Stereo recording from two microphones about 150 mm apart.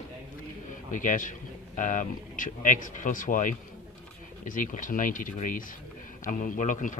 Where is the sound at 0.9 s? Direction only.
60° left (ahead or behind).